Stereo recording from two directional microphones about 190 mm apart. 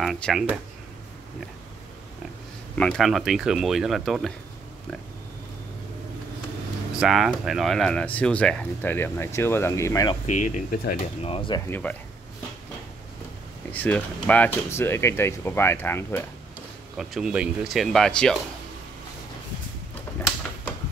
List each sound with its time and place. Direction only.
0.0 s speech: centre (ahead or behind)
2.8 s speech: centre (ahead or behind)
7.0 s speech: centre (ahead or behind); by 10.1 s 15° left (ahead or behind)
10.4 s speech: 45° left (ahead or behind)
11.2 s speech: 25° left (ahead or behind)
11.7 s speech: 10° left (ahead or behind)
13.7 s speech: 10° left (ahead or behind)
16.9 s speech: centre (ahead or behind)